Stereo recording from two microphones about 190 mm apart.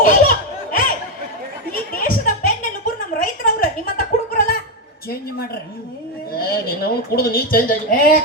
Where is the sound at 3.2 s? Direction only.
50° left (ahead or behind).